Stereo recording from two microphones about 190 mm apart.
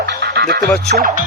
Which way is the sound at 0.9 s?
50° right (ahead or behind).